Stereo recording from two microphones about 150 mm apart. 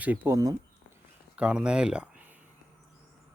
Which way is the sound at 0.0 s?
10° right (ahead or behind).